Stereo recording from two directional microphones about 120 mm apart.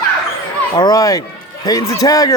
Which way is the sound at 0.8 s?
30° left (ahead or behind).